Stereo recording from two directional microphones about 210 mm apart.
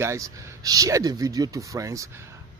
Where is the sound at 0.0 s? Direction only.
15° right (ahead or behind).